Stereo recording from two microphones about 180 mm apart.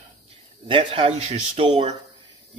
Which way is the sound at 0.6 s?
30° right (ahead or behind).